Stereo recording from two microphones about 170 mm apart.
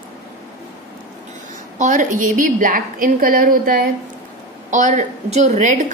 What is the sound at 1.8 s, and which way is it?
A woman's voice, 50° right (ahead or behind).